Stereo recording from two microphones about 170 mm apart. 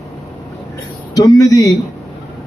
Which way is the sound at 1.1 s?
20° left (ahead or behind).